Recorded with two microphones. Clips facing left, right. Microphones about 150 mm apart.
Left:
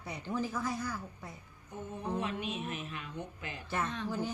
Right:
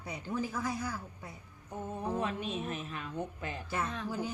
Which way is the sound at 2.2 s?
35° right (ahead or behind).